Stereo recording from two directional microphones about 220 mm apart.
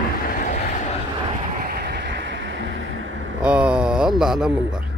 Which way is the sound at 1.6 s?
45° right (ahead or behind).